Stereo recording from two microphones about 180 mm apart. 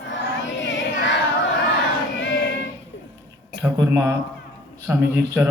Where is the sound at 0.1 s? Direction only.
90° left.